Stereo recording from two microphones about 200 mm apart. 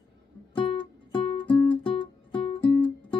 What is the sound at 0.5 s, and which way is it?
Music, 25° left (ahead or behind).